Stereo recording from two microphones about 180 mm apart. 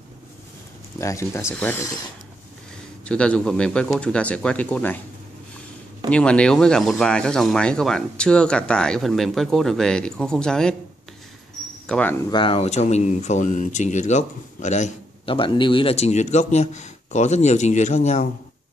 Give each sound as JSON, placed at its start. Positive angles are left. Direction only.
{"t": 0.9, "sound": "speech", "side_deg": 15}
{"t": 3.1, "sound": "speech", "side_deg": 5}
{"t": 6.0, "sound": "speech", "side_deg": 5}
{"t": 11.9, "sound": "speech", "side_deg": 10}
{"t": 12.3, "sound": "speech", "side_deg": 30}